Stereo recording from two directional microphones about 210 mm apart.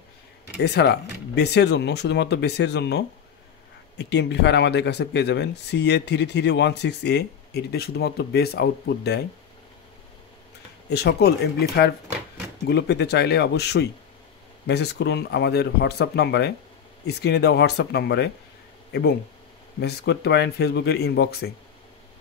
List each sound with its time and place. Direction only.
0.6 s speech: 55° left (ahead or behind)
10.9 s speech: 50° left (ahead or behind)